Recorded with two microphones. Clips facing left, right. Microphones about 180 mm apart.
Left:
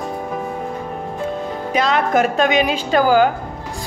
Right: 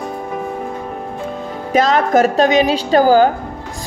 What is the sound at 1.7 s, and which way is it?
Speech, 45° right (ahead or behind).